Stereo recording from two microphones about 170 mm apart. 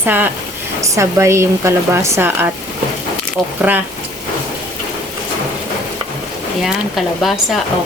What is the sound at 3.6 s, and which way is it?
Speech, 10° right (ahead or behind).